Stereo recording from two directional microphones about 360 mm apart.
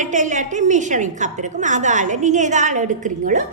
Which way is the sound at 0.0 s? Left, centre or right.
Right.